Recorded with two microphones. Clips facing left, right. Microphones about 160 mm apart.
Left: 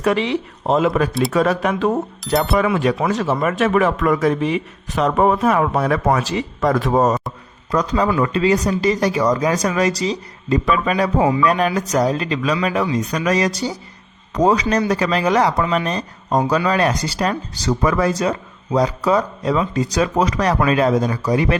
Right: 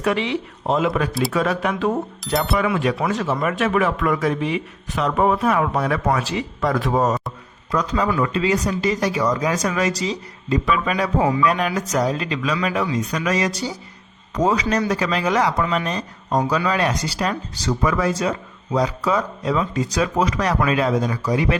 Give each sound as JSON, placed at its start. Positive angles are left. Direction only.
{"t": 0.0, "sound": "speech", "side_deg": 40}
{"t": 2.2, "sound": "speech", "side_deg": 0}
{"t": 2.6, "sound": "speech", "side_deg": 35}